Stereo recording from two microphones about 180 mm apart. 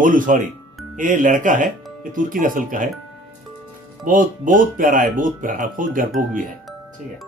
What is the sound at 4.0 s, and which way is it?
Speech, 50° right (ahead or behind).